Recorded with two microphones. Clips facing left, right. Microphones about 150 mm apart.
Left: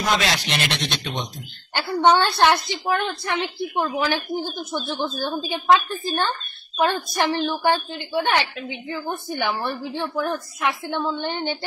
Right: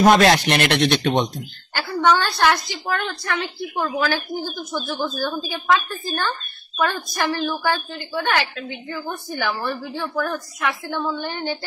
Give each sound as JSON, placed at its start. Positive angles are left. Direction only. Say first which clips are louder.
{"t": 0.0, "sound": "speech", "louder": "right 9 dB", "side_deg": -50}
{"t": 1.7, "sound": "a woman's voice", "louder": "left 1 dB", "side_deg": 20}